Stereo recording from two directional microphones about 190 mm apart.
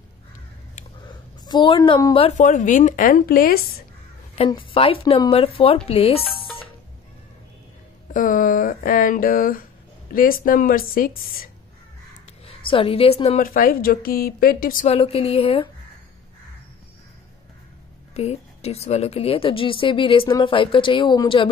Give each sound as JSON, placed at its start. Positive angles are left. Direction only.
{"t": 1.0, "sound": "a sound", "side_deg": 25}
{"t": 2.1, "sound": "speech", "side_deg": 35}
{"t": 4.5, "sound": "a woman's voice", "side_deg": 30}
{"t": 8.1, "sound": "speech", "side_deg": 45}
{"t": 12.4, "sound": "a woman's voice", "side_deg": 30}
{"t": 13.4, "sound": "speech", "side_deg": 45}
{"t": 15.0, "sound": "speech", "side_deg": 30}
{"t": 18.1, "sound": "a woman's voice", "side_deg": 35}